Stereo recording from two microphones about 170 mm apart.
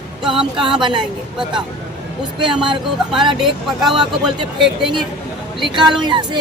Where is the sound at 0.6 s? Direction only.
25° right (ahead or behind).